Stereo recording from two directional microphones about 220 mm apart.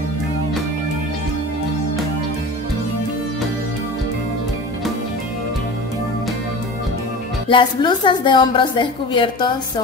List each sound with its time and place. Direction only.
7.4 s a woman's voice: 20° left (ahead or behind)